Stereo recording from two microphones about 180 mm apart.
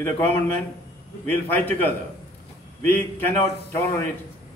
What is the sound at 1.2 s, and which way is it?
Speech, 10° left (ahead or behind).